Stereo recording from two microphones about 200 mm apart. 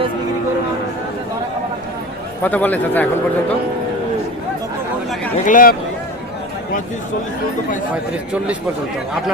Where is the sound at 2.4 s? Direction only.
10° left (ahead or behind).